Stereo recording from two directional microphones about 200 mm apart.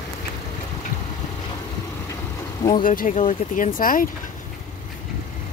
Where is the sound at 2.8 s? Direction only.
40° left (ahead or behind).